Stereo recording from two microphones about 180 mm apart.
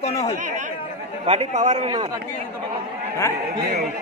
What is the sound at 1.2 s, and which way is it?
Speech, 35° right (ahead or behind).